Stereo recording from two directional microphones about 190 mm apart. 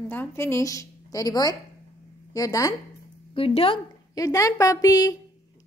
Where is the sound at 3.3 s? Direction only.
30° left (ahead or behind).